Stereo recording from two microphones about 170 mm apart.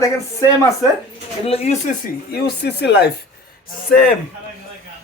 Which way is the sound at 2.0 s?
65° left (ahead or behind).